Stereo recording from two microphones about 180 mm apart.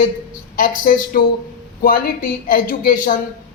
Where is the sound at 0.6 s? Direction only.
50° left (ahead or behind).